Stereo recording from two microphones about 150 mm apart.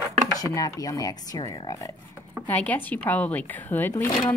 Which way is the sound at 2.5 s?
10° left (ahead or behind).